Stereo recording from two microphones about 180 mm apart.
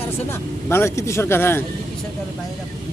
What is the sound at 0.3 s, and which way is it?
Speech, 15° left (ahead or behind).